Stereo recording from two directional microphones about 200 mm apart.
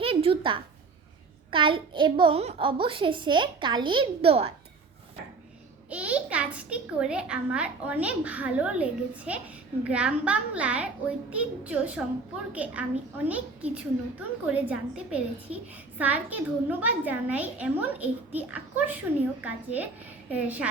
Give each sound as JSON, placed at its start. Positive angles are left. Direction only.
{"t": 0.0, "sound": "a sound", "side_deg": -25}
{"t": 1.5, "sound": "a child's voice", "side_deg": -25}
{"t": 5.9, "sound": "a child's voice", "side_deg": -5}